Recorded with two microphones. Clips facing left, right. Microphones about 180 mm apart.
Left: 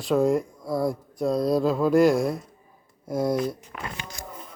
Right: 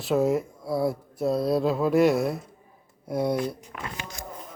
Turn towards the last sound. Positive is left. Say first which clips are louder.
# left 2 dB
turn(degrees=-5)  # may be behind; listen again after turning